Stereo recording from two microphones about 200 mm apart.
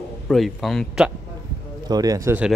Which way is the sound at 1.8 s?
20° right (ahead or behind).